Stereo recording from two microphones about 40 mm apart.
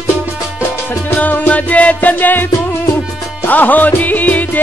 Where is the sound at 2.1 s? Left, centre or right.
Left.